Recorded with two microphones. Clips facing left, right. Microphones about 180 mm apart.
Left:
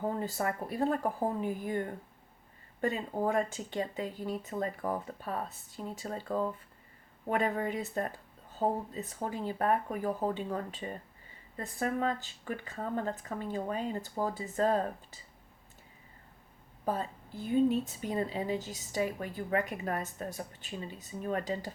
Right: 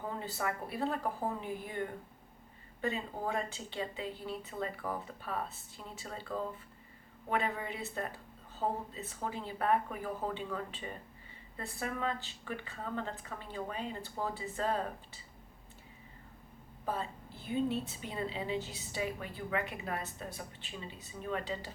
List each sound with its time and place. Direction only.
0.0 s a woman's voice: 45° left (ahead or behind)
2.8 s a woman's voice: 45° left (ahead or behind)
16.8 s a woman's voice: 40° left (ahead or behind)